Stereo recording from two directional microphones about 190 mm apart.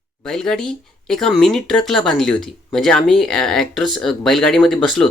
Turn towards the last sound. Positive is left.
turn(degrees=0)  # may be behind; listen again after turning